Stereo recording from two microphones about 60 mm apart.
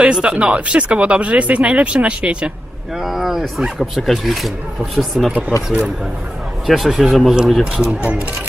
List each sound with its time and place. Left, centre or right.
0.0 s speech: centre
2.9 s speech: centre
5.3 s speech: right
6.7 s speech: centre
7.6 s speech: centre